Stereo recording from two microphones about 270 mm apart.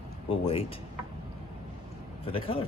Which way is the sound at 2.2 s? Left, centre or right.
Centre.